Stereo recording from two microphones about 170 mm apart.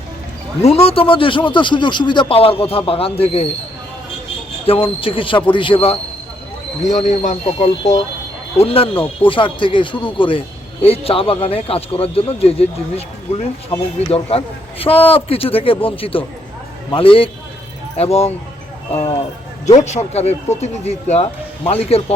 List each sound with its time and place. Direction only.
0.6 s a man's voice: 35° left (ahead or behind)
4.6 s a man's voice: 35° left (ahead or behind)
6.8 s a man's voice: 45° left (ahead or behind)
19.6 s a man's voice: 40° left (ahead or behind)